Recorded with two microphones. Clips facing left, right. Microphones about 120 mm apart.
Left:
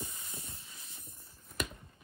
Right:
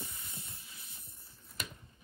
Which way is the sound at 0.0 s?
25° left (ahead or behind).